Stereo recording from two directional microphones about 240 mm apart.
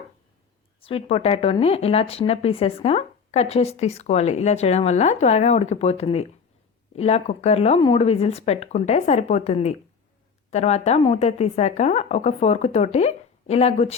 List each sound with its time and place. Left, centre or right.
0.9 s speech: left